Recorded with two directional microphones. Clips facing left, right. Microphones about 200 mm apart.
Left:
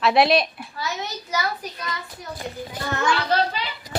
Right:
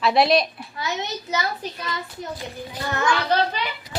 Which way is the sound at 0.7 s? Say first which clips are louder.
Right 2 dB; 20° right (ahead or behind).